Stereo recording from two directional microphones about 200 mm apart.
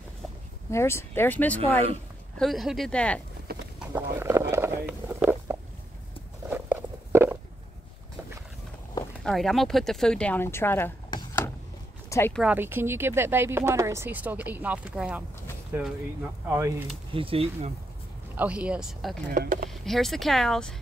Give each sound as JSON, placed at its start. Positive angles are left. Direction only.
{"t": 0.7, "sound": "speech", "side_deg": 15}
{"t": 3.5, "sound": "a sound", "side_deg": -50}
{"t": 3.8, "sound": "a sound", "side_deg": -10}
{"t": 9.2, "sound": "speech", "side_deg": 0}
{"t": 11.1, "sound": "a sound", "side_deg": 20}
{"t": 12.1, "sound": "speech", "side_deg": 10}
{"t": 12.4, "sound": "speech", "side_deg": -10}
{"t": 17.1, "sound": "speech", "side_deg": -25}
{"t": 18.3, "sound": "speech", "side_deg": -5}
{"t": 19.3, "sound": "speech", "side_deg": -45}
{"t": 19.7, "sound": "speech", "side_deg": 0}